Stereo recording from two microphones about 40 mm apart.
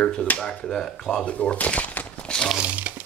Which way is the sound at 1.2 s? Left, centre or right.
Left.